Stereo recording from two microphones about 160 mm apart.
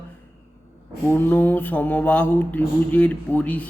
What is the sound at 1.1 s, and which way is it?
Mantra, 10° left (ahead or behind).